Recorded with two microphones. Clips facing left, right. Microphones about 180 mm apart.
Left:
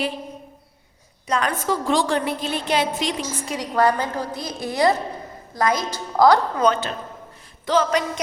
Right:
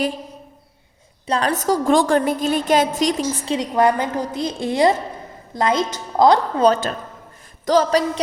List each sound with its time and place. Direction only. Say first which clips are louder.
1.3 s a woman's voice: right 3 dB; 35° right (ahead or behind)
3.4 s a woman's voice: right 2 dB; 25° right (ahead or behind)
6.7 s a woman's voice: right 5 dB; 45° right (ahead or behind)